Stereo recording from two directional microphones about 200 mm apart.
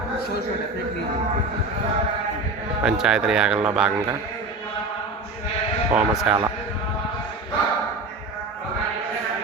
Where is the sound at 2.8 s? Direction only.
5° right (ahead or behind).